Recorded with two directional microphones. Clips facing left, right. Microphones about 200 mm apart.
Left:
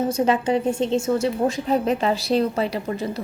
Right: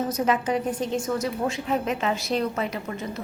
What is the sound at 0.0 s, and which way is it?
A woman's voice, 30° left (ahead or behind).